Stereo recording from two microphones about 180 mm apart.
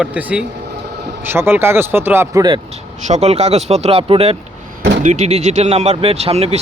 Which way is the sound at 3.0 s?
40° right (ahead or behind).